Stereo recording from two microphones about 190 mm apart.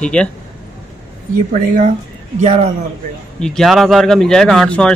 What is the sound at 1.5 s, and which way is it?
Speech, 40° right (ahead or behind).